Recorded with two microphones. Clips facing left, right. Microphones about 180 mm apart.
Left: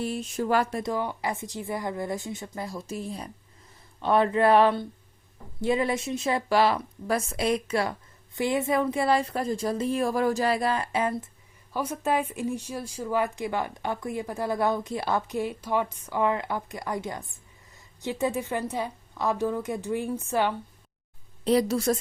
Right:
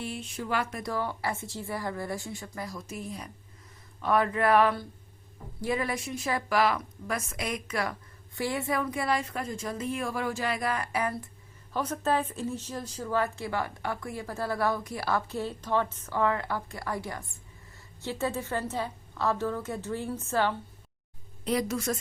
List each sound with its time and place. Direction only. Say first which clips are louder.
0.0 s a woman's voice: left 7 dB; 40° left (ahead or behind)
0.8 s a woman's voice: left 3 dB; 20° left (ahead or behind)
11.7 s speech: left 1 dB; 10° left (ahead or behind)
21.4 s a woman's voice: left 6 dB; 35° left (ahead or behind)